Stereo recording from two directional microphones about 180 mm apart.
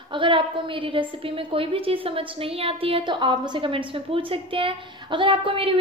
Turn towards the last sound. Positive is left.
turn(degrees=-30)  # may be behind; listen again after turning